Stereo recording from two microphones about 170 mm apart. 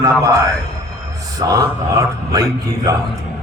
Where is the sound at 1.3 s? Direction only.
20° right (ahead or behind).